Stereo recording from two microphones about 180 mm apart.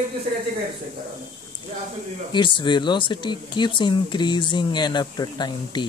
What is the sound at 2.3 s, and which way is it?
Speech, 25° left (ahead or behind).